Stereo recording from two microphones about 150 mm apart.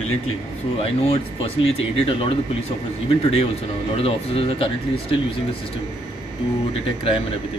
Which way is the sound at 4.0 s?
40° left (ahead or behind).